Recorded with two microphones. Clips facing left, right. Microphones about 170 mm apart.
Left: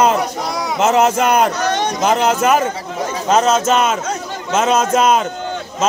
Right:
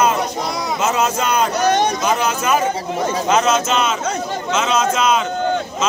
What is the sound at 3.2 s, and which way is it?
Speech, 40° left (ahead or behind).